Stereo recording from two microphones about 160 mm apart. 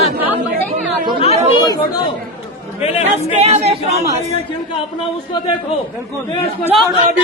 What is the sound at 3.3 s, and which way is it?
Speech, 40° right (ahead or behind).